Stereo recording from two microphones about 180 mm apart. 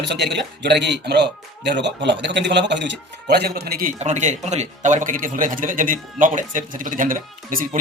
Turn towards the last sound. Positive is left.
turn(degrees=-50)  # may be behind; listen again after turning